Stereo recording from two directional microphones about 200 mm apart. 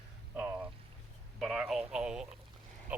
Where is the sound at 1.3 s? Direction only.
Centre (ahead or behind).